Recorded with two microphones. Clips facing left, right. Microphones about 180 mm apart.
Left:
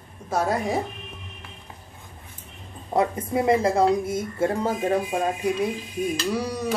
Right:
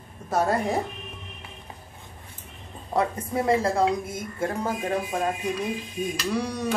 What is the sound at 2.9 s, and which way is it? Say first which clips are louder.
Speech: left 3 dB; 20° left (ahead or behind).